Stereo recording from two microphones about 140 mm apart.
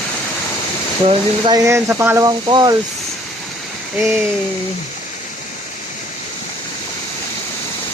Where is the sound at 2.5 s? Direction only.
30° right (ahead or behind).